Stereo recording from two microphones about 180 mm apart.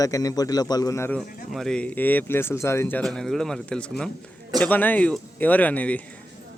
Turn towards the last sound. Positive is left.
turn(degrees=10)  # may be behind; listen again after turning